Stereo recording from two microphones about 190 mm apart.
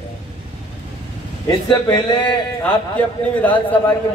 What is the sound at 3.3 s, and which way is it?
Speech, 10° left (ahead or behind).